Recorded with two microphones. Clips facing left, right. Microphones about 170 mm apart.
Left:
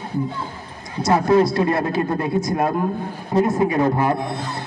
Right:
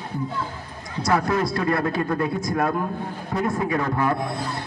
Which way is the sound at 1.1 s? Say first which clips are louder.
Left 6 dB; 25° left (ahead or behind).